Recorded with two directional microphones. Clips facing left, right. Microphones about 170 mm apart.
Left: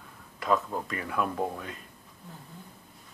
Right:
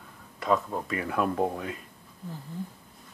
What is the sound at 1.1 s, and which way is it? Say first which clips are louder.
Speech: right 3 dB; 20° right (ahead or behind).